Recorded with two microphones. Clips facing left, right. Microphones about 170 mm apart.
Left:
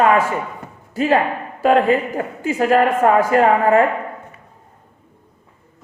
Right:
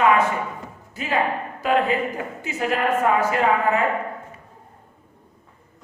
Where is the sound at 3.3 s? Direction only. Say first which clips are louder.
Left 6 dB; 45° left (ahead or behind).